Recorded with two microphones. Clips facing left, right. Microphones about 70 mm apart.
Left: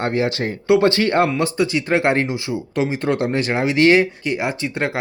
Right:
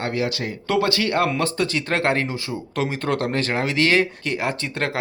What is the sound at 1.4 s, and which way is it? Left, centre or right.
Speech, centre.